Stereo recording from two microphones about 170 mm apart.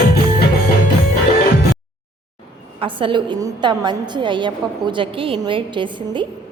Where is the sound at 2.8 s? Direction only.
30° right (ahead or behind).